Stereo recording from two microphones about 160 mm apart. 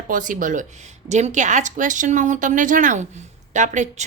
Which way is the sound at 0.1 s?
55° right (ahead or behind).